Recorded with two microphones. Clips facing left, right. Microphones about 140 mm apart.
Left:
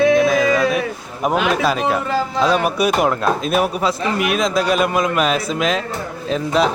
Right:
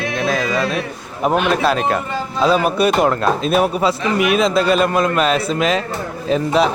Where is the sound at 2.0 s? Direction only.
90° left.